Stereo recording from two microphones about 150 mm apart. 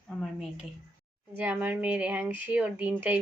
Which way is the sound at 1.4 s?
10° right (ahead or behind).